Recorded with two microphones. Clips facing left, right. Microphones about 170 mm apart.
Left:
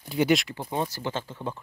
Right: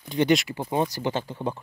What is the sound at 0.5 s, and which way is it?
Speech, 15° right (ahead or behind).